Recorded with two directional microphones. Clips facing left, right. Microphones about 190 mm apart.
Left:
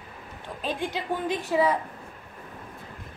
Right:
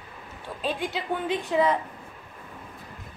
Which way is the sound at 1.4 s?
10° left (ahead or behind).